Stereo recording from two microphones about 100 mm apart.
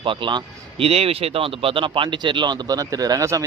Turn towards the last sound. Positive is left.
turn(degrees=-30)  # may be behind; listen again after turning